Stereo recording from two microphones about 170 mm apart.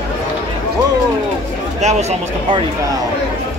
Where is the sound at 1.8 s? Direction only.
40° right (ahead or behind).